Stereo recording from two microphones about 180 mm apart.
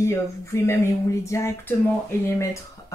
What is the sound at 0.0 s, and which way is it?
Speech, 15° left (ahead or behind).